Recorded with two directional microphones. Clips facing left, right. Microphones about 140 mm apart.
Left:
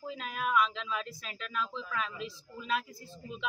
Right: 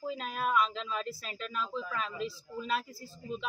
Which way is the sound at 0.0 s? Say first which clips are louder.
Right 2 dB; centre (ahead or behind).